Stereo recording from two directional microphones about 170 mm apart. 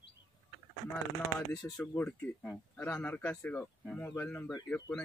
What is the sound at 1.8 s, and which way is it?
Speech, 10° left (ahead or behind).